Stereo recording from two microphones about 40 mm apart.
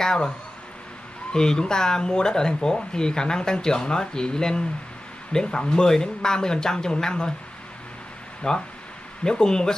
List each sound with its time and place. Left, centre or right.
0.0 s speech: centre
1.3 s speech: centre
8.4 s speech: centre